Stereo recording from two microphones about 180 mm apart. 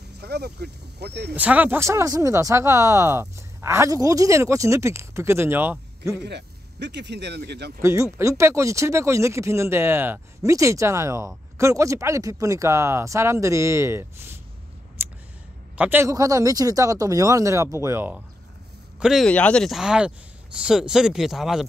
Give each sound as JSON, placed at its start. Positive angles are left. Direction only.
{"t": 0.2, "sound": "speech", "side_deg": -65}
{"t": 1.3, "sound": "speech", "side_deg": -10}
{"t": 6.2, "sound": "speech", "side_deg": -70}
{"t": 7.8, "sound": "speech", "side_deg": -15}
{"t": 15.8, "sound": "speech", "side_deg": -10}